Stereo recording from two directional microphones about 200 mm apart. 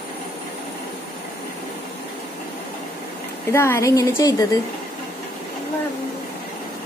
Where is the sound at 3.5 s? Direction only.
15° left (ahead or behind).